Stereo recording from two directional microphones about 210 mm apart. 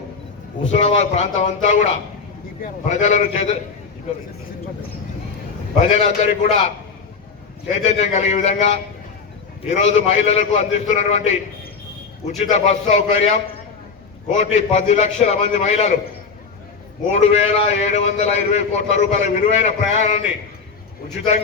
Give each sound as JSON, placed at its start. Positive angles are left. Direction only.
{"t": 0.7, "sound": "a man's voice", "side_deg": 30}
{"t": 5.8, "sound": "a man's voice", "side_deg": 30}
{"t": 7.7, "sound": "a man's voice", "side_deg": 30}
{"t": 17.1, "sound": "a man's voice", "side_deg": 30}